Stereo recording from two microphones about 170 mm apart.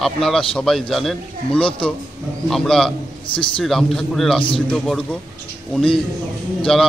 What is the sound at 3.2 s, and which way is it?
Speech, 30° left (ahead or behind).